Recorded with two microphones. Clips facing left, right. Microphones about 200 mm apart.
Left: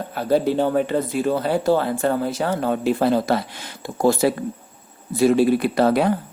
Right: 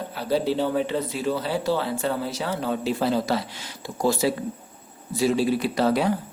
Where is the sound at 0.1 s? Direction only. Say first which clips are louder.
Left 5 dB; 50° left (ahead or behind).